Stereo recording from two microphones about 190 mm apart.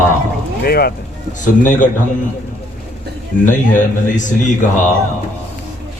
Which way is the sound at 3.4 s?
40° left (ahead or behind).